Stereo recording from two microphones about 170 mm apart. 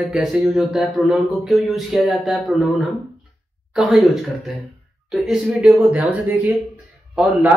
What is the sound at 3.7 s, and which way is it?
Speech, centre (ahead or behind).